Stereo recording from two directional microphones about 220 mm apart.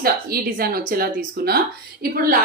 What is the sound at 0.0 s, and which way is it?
Speech, 45° right (ahead or behind).